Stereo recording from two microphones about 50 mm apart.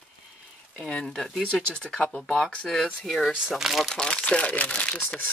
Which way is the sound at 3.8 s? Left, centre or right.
Centre.